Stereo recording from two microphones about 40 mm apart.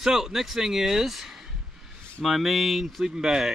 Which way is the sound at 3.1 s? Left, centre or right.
Centre.